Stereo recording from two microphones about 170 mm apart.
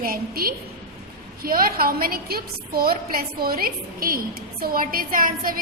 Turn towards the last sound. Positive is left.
turn(degrees=-55)  # may be behind; listen again after turning